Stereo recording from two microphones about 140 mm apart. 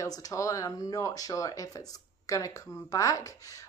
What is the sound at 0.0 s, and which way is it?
Speech, 25° left (ahead or behind).